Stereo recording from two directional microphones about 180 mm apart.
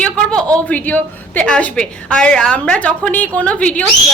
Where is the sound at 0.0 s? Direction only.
5° left (ahead or behind).